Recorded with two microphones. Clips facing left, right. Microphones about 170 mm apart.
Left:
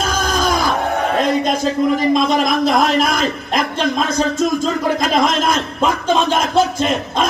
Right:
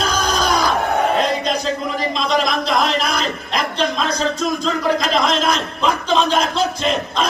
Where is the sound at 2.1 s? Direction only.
50° left (ahead or behind).